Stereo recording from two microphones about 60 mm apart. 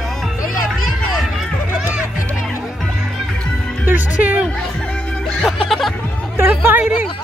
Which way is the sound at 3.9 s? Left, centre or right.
Right.